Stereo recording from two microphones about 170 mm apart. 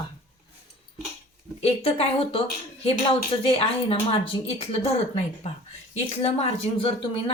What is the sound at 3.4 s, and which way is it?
A woman's voice, 35° left (ahead or behind).